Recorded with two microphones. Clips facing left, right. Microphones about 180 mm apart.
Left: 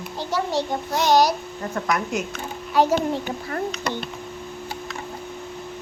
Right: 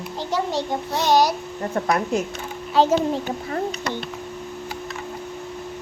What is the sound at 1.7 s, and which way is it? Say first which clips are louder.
A woman's voice: right 3 dB; 30° right (ahead or behind).